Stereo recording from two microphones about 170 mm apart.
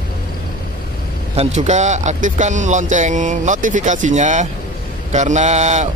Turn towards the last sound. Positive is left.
turn(degrees=-40)  # may be behind; listen again after turning